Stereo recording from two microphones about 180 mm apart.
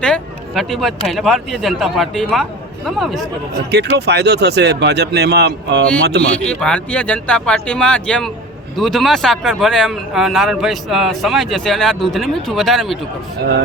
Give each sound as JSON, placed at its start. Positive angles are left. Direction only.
{"t": 0.0, "sound": "speech", "side_deg": 5}
{"t": 3.7, "sound": "speech", "side_deg": -70}
{"t": 6.4, "sound": "speech", "side_deg": 5}